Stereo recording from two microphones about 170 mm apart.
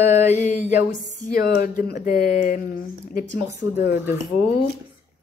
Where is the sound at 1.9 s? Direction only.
55° left (ahead or behind).